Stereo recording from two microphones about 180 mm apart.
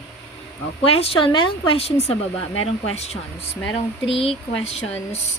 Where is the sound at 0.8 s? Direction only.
35° left (ahead or behind).